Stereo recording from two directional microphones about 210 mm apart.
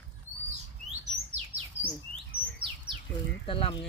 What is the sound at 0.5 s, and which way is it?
Chirp, 35° right (ahead or behind).